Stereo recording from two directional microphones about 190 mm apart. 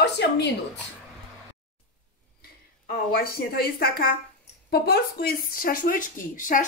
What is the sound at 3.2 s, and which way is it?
Speech, 50° left (ahead or behind).